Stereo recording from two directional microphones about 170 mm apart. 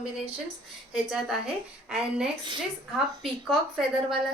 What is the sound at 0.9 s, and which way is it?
A woman's voice, 5° right (ahead or behind).